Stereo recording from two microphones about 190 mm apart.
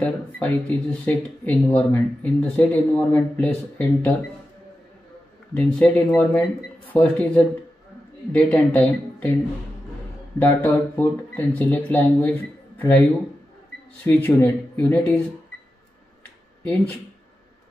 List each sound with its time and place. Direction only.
0.0 s speech: 5° left (ahead or behind)
5.8 s speech: 5° left (ahead or behind)
10.4 s speech: 10° left (ahead or behind)
14.0 s speech: 10° left (ahead or behind)